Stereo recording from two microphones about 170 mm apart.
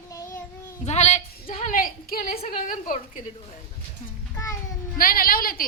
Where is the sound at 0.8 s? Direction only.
40° left (ahead or behind).